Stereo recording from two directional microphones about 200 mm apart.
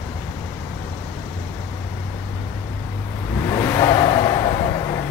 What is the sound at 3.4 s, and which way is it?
Vehicle, 15° left (ahead or behind).